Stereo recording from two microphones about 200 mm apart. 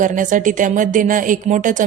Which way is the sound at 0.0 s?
40° right (ahead or behind).